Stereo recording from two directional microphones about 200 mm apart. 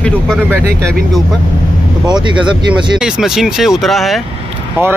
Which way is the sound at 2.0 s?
20° right (ahead or behind).